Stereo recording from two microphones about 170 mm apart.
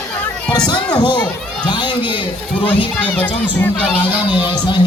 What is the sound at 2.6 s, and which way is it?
A child's voice, 10° left (ahead or behind).